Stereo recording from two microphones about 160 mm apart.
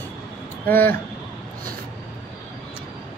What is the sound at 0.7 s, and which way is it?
Dishes, 10° left (ahead or behind).